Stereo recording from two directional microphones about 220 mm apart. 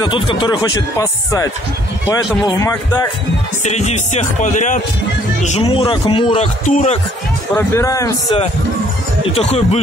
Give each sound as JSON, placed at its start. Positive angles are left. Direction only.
{"t": 0.0, "sound": "speech", "side_deg": 20}
{"t": 3.6, "sound": "music", "side_deg": 30}
{"t": 5.4, "sound": "speech", "side_deg": 30}
{"t": 7.5, "sound": "speech", "side_deg": 15}
{"t": 9.3, "sound": "speech", "side_deg": 30}